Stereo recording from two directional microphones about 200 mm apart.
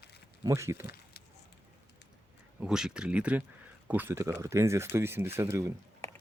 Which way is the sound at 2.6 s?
5° right (ahead or behind).